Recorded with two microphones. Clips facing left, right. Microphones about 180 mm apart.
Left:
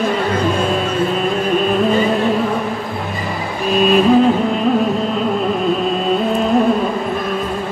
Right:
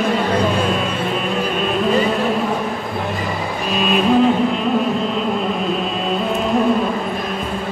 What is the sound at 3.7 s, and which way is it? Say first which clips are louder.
Music: left 6 dB; centre (ahead or behind).